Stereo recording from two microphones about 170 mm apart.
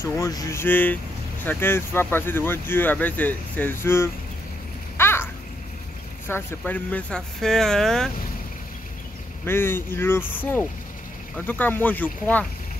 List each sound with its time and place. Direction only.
0.0 s speech: 20° left (ahead or behind)
4.9 s a sound: 15° left (ahead or behind)
6.2 s speech: 10° left (ahead or behind)
9.5 s speech: 15° left (ahead or behind)